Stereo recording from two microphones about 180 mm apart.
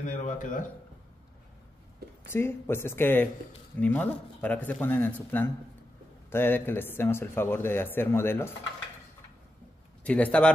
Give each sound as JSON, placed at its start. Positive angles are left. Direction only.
{"t": 0.0, "sound": "speech", "side_deg": 45}
{"t": 2.3, "sound": "a man's voice", "side_deg": 15}
{"t": 10.0, "sound": "a man's voice", "side_deg": 5}